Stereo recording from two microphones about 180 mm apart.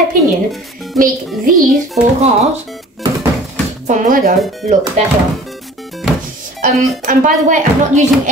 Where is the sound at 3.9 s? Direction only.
45° right (ahead or behind).